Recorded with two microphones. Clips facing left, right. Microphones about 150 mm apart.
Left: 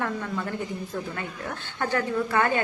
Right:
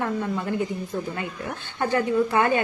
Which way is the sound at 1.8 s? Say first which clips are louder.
Right 4 dB; 15° right (ahead or behind).